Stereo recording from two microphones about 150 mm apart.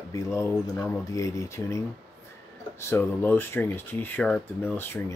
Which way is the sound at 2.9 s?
15° left (ahead or behind).